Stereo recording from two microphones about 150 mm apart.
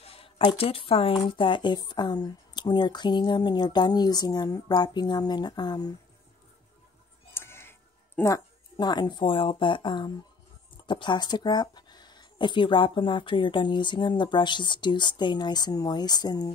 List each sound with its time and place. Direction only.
0.0 s a sound: 40° left (ahead or behind)
0.4 s speech: 35° left (ahead or behind)
7.3 s tick-tock: 15° left (ahead or behind)
8.2 s speech: 25° left (ahead or behind)